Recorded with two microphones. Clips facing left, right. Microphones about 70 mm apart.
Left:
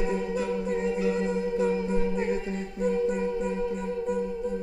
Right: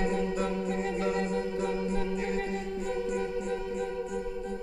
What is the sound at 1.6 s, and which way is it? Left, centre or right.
Music, left.